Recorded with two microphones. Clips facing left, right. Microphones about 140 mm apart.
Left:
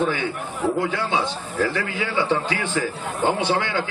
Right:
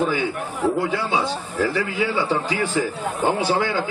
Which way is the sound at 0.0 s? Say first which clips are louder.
Right 1 dB; 5° right (ahead or behind).